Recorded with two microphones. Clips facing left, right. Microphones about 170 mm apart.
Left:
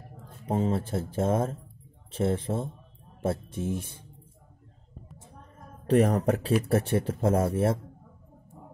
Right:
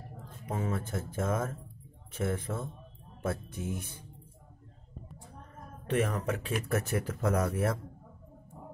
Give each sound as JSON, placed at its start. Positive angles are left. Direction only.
{"t": 0.5, "sound": "speech", "side_deg": 30}
{"t": 5.9, "sound": "speech", "side_deg": 40}